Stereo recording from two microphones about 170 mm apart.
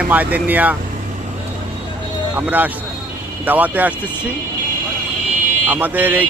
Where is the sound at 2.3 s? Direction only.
10° right (ahead or behind).